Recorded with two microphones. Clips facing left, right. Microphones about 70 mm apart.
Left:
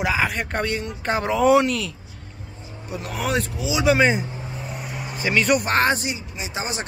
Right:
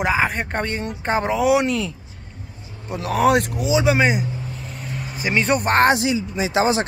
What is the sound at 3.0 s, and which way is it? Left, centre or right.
Speech, right.